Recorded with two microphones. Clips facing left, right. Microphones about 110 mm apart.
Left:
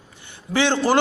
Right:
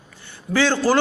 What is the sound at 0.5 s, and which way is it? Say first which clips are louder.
Speech: right 1 dB; 20° left (ahead or behind).